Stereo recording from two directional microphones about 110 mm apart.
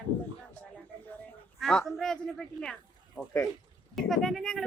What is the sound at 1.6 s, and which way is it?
Speech, 5° left (ahead or behind).